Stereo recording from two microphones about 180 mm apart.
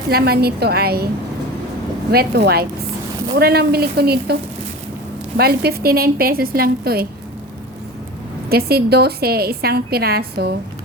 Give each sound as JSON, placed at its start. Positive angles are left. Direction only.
{"t": 0.1, "sound": "a woman's voice", "side_deg": -60}
{"t": 2.1, "sound": "a woman's voice", "side_deg": -65}
{"t": 5.4, "sound": "a woman's voice", "side_deg": -60}
{"t": 8.4, "sound": "a woman's voice", "side_deg": -60}